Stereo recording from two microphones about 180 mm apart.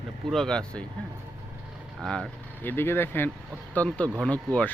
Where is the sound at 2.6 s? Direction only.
10° left (ahead or behind).